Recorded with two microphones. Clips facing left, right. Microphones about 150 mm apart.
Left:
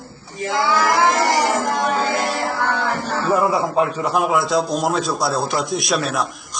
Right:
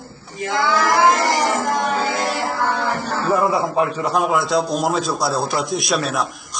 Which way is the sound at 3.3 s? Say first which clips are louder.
Even; 15° left (ahead or behind).